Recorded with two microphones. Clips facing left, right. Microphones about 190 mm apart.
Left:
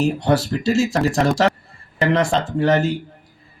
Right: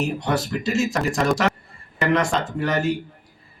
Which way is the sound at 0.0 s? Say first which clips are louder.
Left 5 dB; 30° left (ahead or behind).